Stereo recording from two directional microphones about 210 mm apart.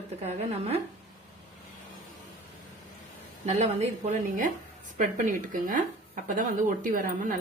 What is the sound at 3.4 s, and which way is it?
A woman's voice, 30° right (ahead or behind).